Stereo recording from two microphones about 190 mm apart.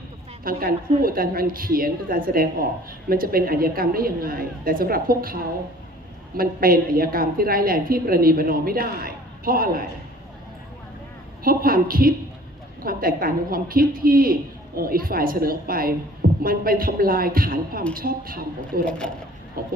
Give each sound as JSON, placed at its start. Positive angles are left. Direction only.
{"t": 0.4, "sound": "a woman's voice", "side_deg": -50}
{"t": 11.4, "sound": "a woman's voice", "side_deg": -50}
{"t": 18.9, "sound": "speech", "side_deg": 5}
{"t": 19.6, "sound": "a woman's voice", "side_deg": -50}